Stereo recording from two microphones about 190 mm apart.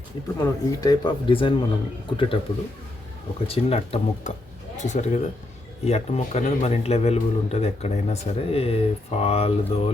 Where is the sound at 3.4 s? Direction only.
30° left (ahead or behind).